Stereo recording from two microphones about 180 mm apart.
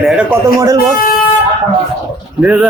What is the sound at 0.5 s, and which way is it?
Speech, 20° right (ahead or behind).